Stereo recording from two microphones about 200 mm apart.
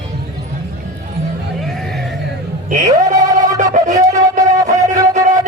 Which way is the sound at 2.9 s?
15° right (ahead or behind).